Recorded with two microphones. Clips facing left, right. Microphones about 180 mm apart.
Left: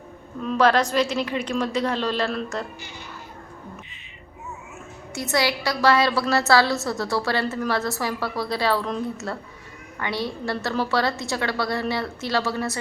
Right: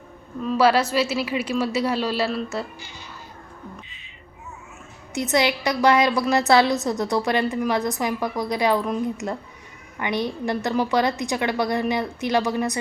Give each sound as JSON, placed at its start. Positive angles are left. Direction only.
{"t": 0.4, "sound": "a woman's voice", "side_deg": -5}
{"t": 5.1, "sound": "a woman's voice", "side_deg": -20}